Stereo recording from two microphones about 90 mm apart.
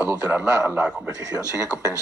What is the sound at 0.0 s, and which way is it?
A man's voice, 20° right (ahead or behind).